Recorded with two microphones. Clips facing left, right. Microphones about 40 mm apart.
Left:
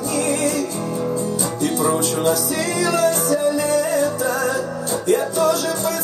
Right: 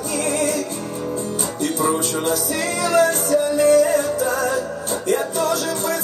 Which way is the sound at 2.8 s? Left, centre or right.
Right.